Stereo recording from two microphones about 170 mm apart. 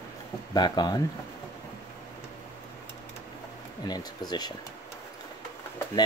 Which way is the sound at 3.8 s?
25° left (ahead or behind).